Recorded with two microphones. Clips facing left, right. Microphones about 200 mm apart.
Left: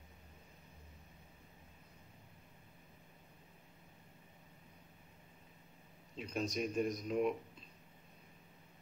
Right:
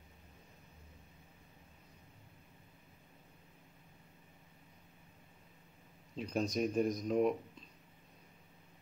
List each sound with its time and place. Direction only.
6.1 s speech: 40° right (ahead or behind)